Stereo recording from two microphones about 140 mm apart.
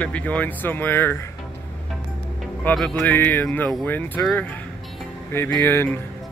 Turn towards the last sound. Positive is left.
turn(degrees=15)  # may be behind; listen again after turning